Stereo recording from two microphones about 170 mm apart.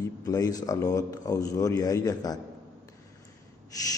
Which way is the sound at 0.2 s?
20° left (ahead or behind).